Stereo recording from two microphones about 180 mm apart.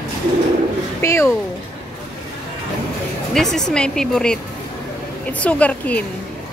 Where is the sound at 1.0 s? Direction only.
15° left (ahead or behind).